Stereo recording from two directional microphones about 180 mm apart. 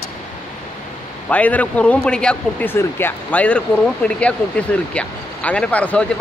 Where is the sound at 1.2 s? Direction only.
10° left (ahead or behind).